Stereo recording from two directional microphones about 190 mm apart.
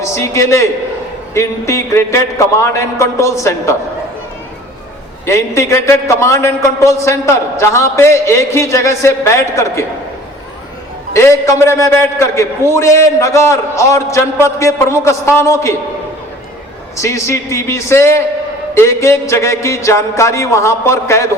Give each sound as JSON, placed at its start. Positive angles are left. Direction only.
{"t": 0.0, "sound": "a man's voice", "side_deg": 15}
{"t": 5.2, "sound": "a man's voice", "side_deg": 15}
{"t": 11.1, "sound": "a man's voice", "side_deg": 15}
{"t": 17.0, "sound": "a man's voice", "side_deg": 15}